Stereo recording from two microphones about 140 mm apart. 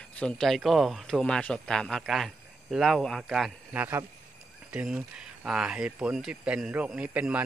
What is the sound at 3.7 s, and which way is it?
Speech, 15° right (ahead or behind).